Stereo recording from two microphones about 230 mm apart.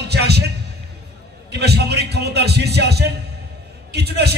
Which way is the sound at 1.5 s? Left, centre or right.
Right.